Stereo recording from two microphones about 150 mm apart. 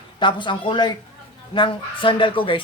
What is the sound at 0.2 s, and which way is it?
Speech, 30° left (ahead or behind).